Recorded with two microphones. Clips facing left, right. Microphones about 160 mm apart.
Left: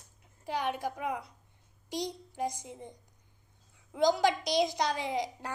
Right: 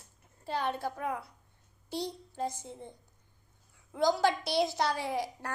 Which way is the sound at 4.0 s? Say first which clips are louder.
Left 1 dB; 20° left (ahead or behind).